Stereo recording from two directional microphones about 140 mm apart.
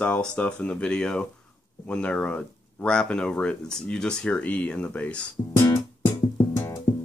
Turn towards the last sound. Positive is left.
turn(degrees=20)  # may be behind; listen again after turning